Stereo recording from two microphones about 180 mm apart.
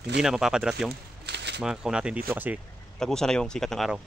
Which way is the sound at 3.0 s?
5° left (ahead or behind).